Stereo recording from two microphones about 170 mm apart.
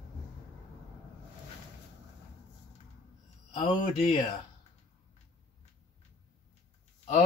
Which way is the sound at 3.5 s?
30° left (ahead or behind).